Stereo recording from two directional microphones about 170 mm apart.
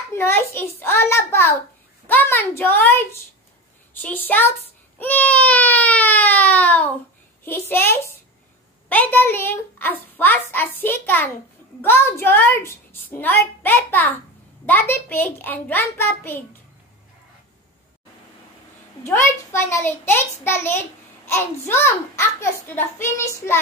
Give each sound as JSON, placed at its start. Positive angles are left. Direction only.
{"t": 0.1, "sound": "a child's voice", "side_deg": 15}
{"t": 4.9, "sound": "baby cry", "side_deg": 10}
{"t": 7.4, "sound": "a child's voice", "side_deg": 15}
{"t": 19.0, "sound": "a child's voice", "side_deg": 15}